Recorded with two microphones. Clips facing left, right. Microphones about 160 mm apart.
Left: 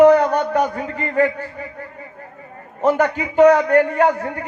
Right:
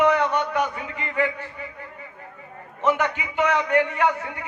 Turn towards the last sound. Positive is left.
turn(degrees=40)  # may be behind; listen again after turning